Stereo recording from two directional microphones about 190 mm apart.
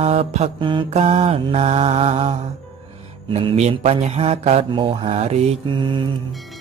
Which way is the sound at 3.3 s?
30° right (ahead or behind).